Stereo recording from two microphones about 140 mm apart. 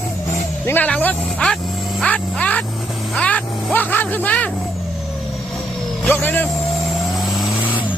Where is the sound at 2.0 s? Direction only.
10° left (ahead or behind).